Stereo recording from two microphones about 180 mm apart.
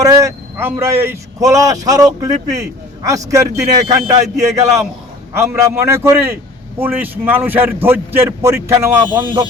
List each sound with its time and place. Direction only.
0.0 s a man's voice: 20° right (ahead or behind)